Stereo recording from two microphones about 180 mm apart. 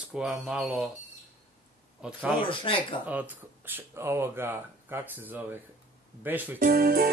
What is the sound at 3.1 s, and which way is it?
Speech, 10° right (ahead or behind).